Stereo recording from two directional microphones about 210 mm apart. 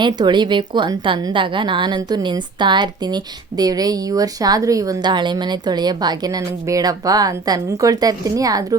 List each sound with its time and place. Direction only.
0.0 s a woman's voice: 20° right (ahead or behind)